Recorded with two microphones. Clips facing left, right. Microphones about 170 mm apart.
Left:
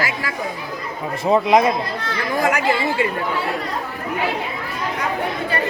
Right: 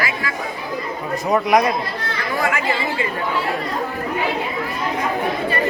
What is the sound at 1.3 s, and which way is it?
Speech, 25° left (ahead or behind).